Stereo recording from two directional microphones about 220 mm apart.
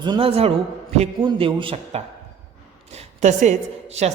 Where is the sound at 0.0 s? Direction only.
25° right (ahead or behind).